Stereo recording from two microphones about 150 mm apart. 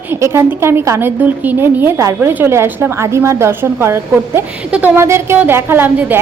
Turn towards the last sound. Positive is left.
turn(degrees=-10)  # may be behind; listen again after turning